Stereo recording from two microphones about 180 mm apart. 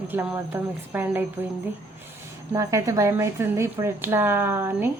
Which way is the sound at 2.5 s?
20° right (ahead or behind).